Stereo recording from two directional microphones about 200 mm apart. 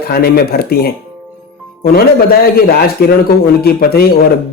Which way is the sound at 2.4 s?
50° left (ahead or behind).